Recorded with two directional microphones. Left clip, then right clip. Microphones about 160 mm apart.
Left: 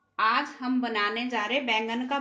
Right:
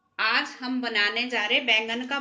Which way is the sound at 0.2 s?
55° left (ahead or behind).